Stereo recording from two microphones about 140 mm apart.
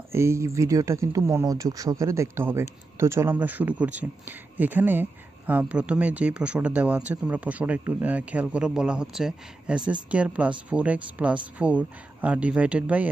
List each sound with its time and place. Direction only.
0.1 s speech: 20° right (ahead or behind)